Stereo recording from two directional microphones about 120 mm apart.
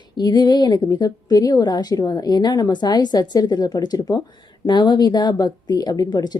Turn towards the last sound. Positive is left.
turn(degrees=35)  # may be behind; listen again after turning